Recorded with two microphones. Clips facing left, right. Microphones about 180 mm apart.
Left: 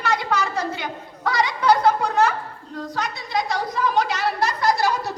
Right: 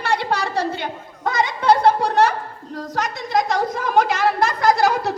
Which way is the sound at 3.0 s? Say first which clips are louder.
Right 5 dB; 45° right (ahead or behind).